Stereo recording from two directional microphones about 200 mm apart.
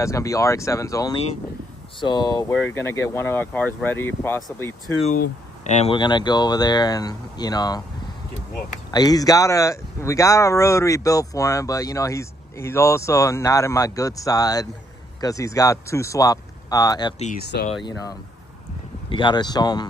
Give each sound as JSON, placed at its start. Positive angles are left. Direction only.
{"t": 0.0, "sound": "speech", "side_deg": 15}
{"t": 5.0, "sound": "speech", "side_deg": 40}
{"t": 5.9, "sound": "speech", "side_deg": 20}
{"t": 8.9, "sound": "speech", "side_deg": 20}
{"t": 17.5, "sound": "speech", "side_deg": 55}
{"t": 19.0, "sound": "speech", "side_deg": 25}